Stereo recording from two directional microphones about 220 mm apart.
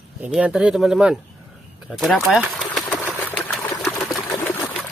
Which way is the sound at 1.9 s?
Centre (ahead or behind).